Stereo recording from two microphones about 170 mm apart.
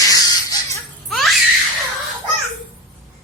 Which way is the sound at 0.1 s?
20° left (ahead or behind).